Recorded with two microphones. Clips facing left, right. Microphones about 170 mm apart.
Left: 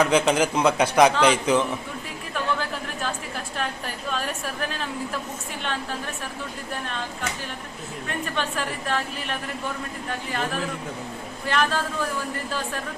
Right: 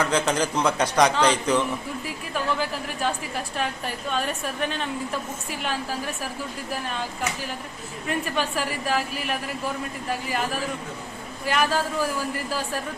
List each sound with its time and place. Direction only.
0.0 s a man's voice: 10° left (ahead or behind)
2.3 s a woman's voice: centre (ahead or behind)
8.4 s a woman's voice: 5° right (ahead or behind)